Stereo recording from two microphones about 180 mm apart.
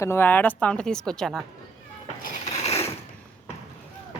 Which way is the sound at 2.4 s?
40° left (ahead or behind).